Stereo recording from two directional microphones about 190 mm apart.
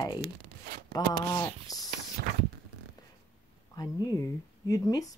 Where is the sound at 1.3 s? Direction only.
20° left (ahead or behind).